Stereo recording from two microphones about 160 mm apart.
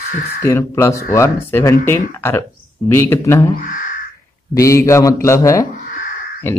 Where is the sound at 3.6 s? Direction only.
55° left (ahead or behind).